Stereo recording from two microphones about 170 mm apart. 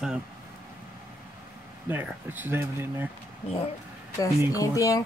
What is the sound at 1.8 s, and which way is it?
Speech, 10° right (ahead or behind).